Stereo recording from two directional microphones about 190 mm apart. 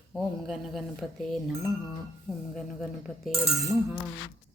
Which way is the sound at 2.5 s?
Centre (ahead or behind).